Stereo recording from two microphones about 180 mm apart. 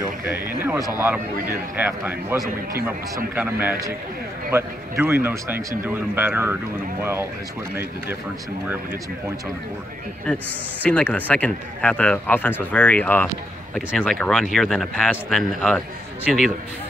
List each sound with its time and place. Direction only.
0.7 s speech: 20° right (ahead or behind)
10.8 s speech: 10° left (ahead or behind)